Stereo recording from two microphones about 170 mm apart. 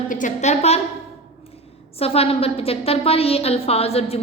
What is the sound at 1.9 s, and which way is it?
A woman's voice, 35° left (ahead or behind).